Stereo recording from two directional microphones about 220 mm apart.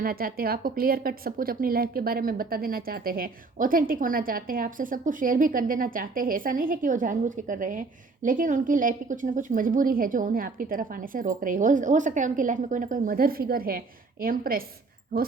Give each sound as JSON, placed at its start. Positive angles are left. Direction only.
{"t": 0.0, "sound": "speech", "side_deg": -40}